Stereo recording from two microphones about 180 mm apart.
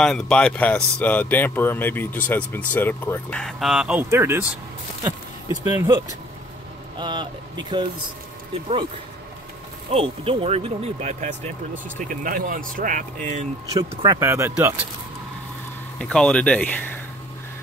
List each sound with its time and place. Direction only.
0.0 s speech: 5° left (ahead or behind); by 7.8 s 25° right (ahead or behind)
9.9 s speech: 30° right (ahead or behind)
13.7 s speech: 20° right (ahead or behind)
16.0 s speech: 5° left (ahead or behind)